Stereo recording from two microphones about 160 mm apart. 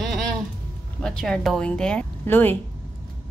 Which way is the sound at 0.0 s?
Centre (ahead or behind).